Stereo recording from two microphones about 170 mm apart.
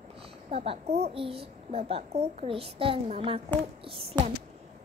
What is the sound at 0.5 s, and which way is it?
A child's voice, 35° right (ahead or behind).